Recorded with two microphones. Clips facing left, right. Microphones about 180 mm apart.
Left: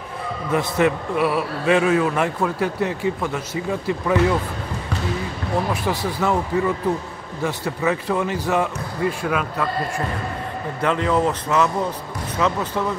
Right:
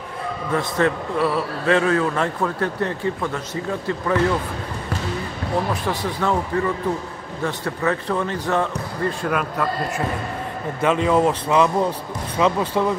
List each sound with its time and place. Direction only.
0.5 s a man's voice: 15° left (ahead or behind)
5.9 s a man's voice: 10° left (ahead or behind)
10.8 s speech: 15° right (ahead or behind)